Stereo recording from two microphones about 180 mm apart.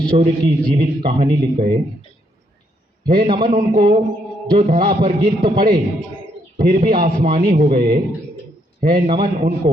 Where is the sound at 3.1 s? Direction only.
25° right (ahead or behind).